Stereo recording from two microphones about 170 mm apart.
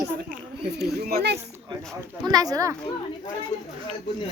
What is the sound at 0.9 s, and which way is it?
Speech, 65° right (ahead or behind).